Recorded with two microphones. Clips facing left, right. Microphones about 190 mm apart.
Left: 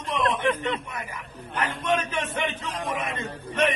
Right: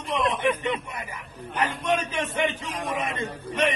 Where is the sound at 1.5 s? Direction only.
10° right (ahead or behind).